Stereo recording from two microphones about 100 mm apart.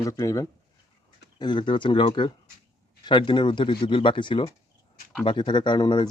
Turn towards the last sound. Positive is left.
turn(degrees=45)  # may be behind; listen again after turning